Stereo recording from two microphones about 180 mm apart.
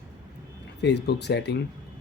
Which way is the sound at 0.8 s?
70° left (ahead or behind).